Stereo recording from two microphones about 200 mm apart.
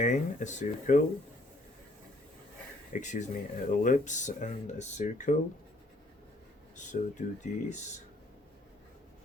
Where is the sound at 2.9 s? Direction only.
40° left (ahead or behind).